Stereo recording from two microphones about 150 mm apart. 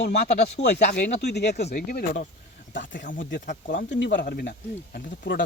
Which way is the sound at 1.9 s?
80° left.